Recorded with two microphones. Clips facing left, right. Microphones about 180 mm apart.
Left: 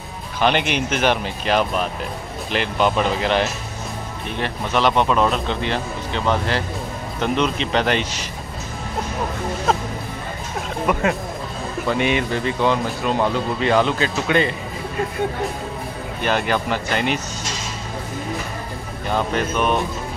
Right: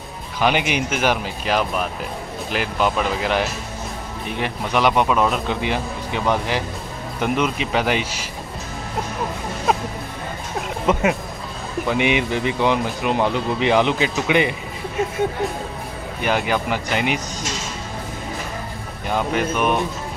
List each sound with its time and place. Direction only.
0.4 s speech: 10° right (ahead or behind)
10.9 s speech: 20° right (ahead or behind)
16.2 s speech: 15° right (ahead or behind)
19.0 s speech: 10° right (ahead or behind)